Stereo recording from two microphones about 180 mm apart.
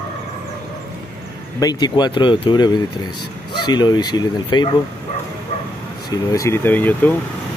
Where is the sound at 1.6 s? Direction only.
20° left (ahead or behind).